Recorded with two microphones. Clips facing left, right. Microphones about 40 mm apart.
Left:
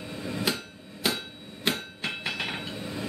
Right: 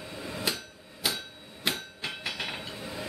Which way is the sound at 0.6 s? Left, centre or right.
Centre.